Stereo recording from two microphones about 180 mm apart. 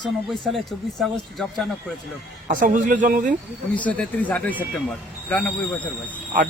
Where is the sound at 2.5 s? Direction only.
45° right (ahead or behind).